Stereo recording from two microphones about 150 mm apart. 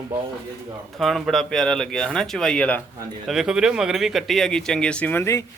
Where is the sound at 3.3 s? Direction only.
5° right (ahead or behind).